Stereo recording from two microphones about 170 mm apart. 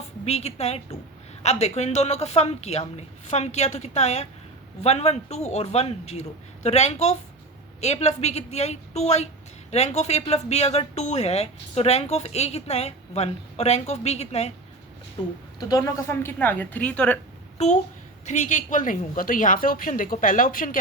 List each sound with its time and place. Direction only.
0.3 s a woman's voice: 40° left (ahead or behind)
15.7 s a woman's voice: 15° left (ahead or behind)
18.3 s a woman's voice: 45° left (ahead or behind)